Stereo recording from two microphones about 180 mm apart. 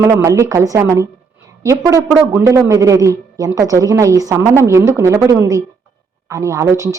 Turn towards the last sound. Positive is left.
turn(degrees=-15)  # may be behind; listen again after turning